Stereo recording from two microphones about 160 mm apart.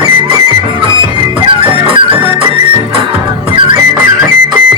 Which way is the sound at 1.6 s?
35° right (ahead or behind).